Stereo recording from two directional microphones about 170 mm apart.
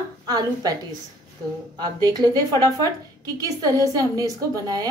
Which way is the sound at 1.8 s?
25° right (ahead or behind).